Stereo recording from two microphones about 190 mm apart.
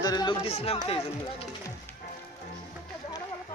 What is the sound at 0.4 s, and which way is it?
Speech, 35° left (ahead or behind).